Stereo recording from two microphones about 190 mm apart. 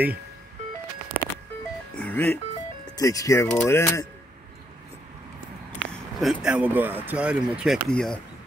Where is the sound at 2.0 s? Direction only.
10° left (ahead or behind).